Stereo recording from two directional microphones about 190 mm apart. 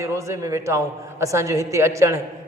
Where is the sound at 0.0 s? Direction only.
15° right (ahead or behind).